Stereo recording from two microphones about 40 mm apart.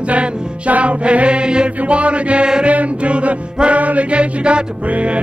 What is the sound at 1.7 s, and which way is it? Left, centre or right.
Music, right.